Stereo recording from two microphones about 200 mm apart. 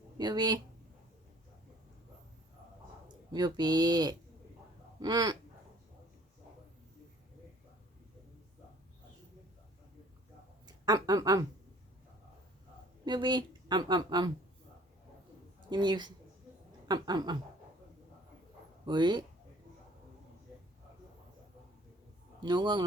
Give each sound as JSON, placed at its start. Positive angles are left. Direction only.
{"t": 0.2, "sound": "a woman's voice", "side_deg": -20}
{"t": 3.3, "sound": "a woman's voice", "side_deg": -20}
{"t": 10.7, "sound": "speech", "side_deg": -20}
{"t": 13.1, "sound": "a woman's voice", "side_deg": -20}
{"t": 15.7, "sound": "a woman's voice", "side_deg": -20}
{"t": 18.9, "sound": "a woman's voice", "side_deg": -20}
{"t": 22.4, "sound": "a man's voice", "side_deg": -20}